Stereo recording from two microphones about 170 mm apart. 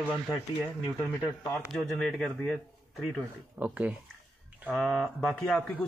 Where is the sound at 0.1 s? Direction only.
5° left (ahead or behind).